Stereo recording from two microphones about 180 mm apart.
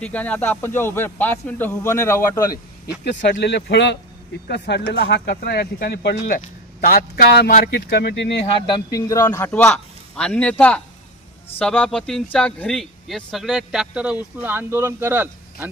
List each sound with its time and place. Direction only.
0.0 s speech: 10° left (ahead or behind)
3.4 s speech: 75° left (ahead or behind)
8.5 s speech: 25° left (ahead or behind); by 15.7 s 10° right (ahead or behind)